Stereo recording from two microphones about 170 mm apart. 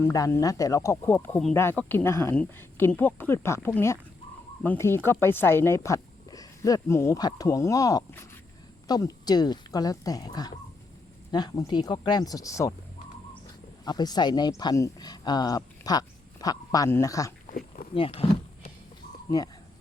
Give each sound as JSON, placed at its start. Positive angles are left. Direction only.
{"t": 0.0, "sound": "speech", "side_deg": 15}
{"t": 13.8, "sound": "speech", "side_deg": 25}
{"t": 17.9, "sound": "speech", "side_deg": 35}